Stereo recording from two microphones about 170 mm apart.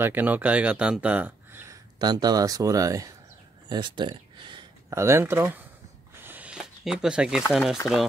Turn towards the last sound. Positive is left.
turn(degrees=-5)  # may be behind; listen again after turning